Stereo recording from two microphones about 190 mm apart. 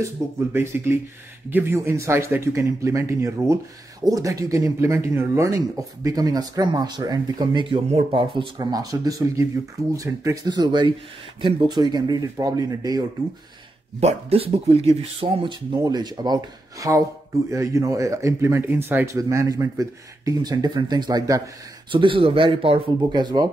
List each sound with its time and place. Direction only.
0.0 s speech: 10° right (ahead or behind)
13.9 s speech: 35° right (ahead or behind)